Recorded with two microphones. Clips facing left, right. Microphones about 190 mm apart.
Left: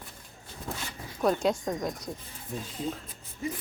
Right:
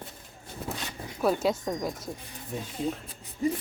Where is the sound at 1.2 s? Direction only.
5° right (ahead or behind).